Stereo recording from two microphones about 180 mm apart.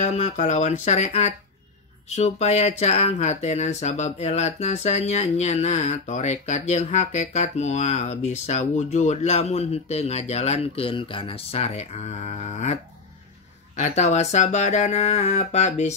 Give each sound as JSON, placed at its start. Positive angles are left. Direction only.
{"t": 0.0, "sound": "speech", "side_deg": 40}
{"t": 13.7, "sound": "speech", "side_deg": 40}